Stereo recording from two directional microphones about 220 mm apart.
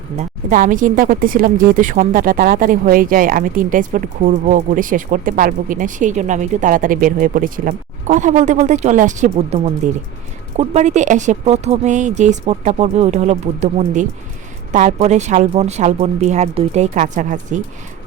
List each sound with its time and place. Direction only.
0.2 s speech: 35° right (ahead or behind)